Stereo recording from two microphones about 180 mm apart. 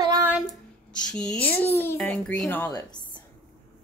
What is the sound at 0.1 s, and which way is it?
Child singing, 10° right (ahead or behind).